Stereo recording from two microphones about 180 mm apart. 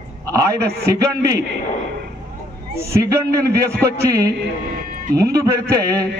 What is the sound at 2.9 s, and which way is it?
Speech, 20° right (ahead or behind).